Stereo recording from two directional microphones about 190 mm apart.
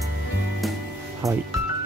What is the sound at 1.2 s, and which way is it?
Speech, 15° right (ahead or behind).